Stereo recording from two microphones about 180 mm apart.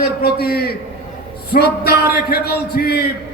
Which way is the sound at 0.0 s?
60° left (ahead or behind).